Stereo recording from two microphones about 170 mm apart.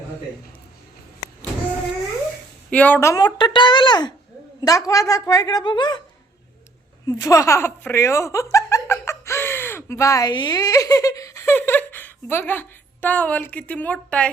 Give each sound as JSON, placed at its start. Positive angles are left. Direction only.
{"t": 2.6, "sound": "speech", "side_deg": 10}
{"t": 7.1, "sound": "speech", "side_deg": 20}